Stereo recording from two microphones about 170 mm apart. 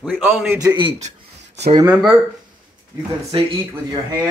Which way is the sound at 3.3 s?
30° right (ahead or behind).